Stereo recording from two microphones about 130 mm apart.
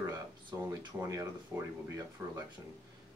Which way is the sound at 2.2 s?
15° right (ahead or behind).